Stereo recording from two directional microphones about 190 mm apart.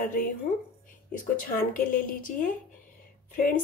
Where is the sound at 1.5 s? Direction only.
45° left (ahead or behind).